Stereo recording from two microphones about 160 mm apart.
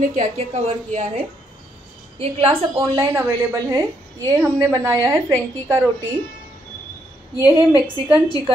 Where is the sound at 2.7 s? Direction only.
15° right (ahead or behind).